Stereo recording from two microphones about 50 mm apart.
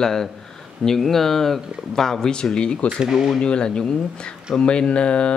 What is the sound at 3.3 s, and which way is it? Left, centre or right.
Speech, centre.